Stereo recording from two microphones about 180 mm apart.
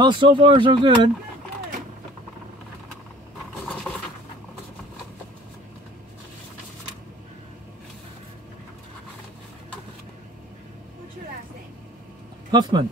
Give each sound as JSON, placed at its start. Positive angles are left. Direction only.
{"t": 0.0, "sound": "speech", "side_deg": -25}
{"t": 12.4, "sound": "speech", "side_deg": -25}